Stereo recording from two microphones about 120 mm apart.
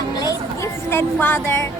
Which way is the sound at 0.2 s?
30° left (ahead or behind).